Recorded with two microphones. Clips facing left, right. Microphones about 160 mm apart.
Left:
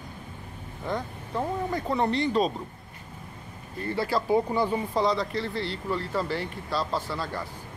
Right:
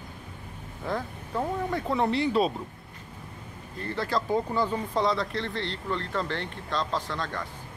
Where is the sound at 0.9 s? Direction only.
Centre (ahead or behind).